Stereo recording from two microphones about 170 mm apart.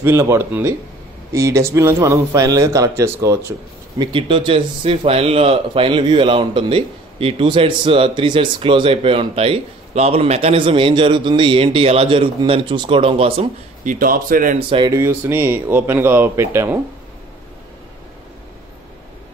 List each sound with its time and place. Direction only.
0.0 s speech: 15° right (ahead or behind)
4.0 s speech: 30° right (ahead or behind)
13.8 s a man's voice: 55° right (ahead or behind)
14.7 s speech: 25° right (ahead or behind)